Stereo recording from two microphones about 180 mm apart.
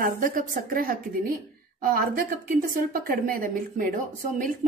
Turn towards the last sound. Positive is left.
turn(degrees=-45)  # may be behind; listen again after turning